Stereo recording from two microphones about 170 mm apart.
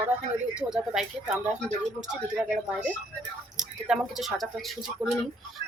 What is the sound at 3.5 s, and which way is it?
A woman's voice, centre (ahead or behind).